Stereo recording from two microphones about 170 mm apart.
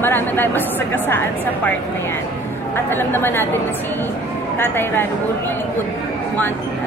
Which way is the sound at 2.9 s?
15° left (ahead or behind).